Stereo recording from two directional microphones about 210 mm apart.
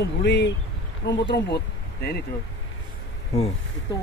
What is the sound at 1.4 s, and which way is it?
Speech, 50° left (ahead or behind).